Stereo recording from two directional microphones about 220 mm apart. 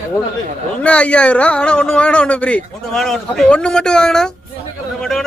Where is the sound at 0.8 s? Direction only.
5° left (ahead or behind).